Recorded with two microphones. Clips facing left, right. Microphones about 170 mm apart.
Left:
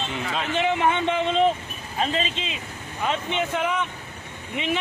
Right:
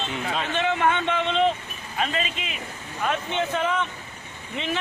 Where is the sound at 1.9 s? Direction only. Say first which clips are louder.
Left 2 dB; 30° left (ahead or behind).